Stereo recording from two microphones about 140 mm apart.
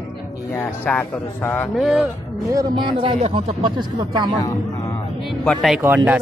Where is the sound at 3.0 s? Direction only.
40° right (ahead or behind).